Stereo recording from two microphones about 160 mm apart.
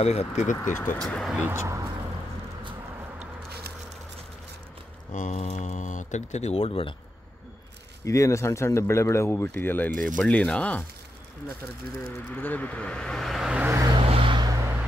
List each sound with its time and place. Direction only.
0.0 s speech: 40° left (ahead or behind)
0.6 s speech: 15° left (ahead or behind)
1.0 s speech: centre (ahead or behind)
1.4 s speech: 15° right (ahead or behind)
5.1 s speech: 50° left (ahead or behind)
8.0 s speech: 20° left (ahead or behind)
12.0 s speech: 10° left (ahead or behind)
13.7 s vehicle: 20° right (ahead or behind)
14.0 s vehicle: 35° right (ahead or behind)